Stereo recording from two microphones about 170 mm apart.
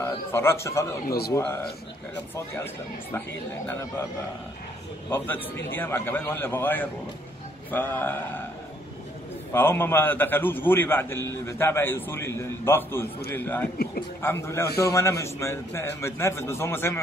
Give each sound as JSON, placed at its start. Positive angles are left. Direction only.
{"t": 0.0, "sound": "a man's voice", "side_deg": 15}
{"t": 5.1, "sound": "a man's voice", "side_deg": 10}
{"t": 9.5, "sound": "a man's voice", "side_deg": 15}